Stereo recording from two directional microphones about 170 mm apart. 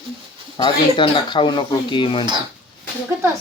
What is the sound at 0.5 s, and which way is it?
Speech, 30° left (ahead or behind).